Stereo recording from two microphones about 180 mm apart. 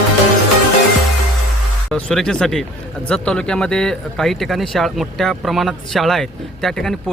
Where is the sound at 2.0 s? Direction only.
5° left (ahead or behind).